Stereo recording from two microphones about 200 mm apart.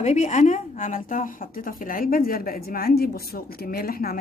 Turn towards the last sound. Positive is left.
turn(degrees=45)  # may be behind; listen again after turning